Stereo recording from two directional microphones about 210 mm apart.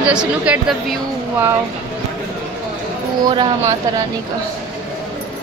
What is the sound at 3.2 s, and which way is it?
Speech, 20° right (ahead or behind).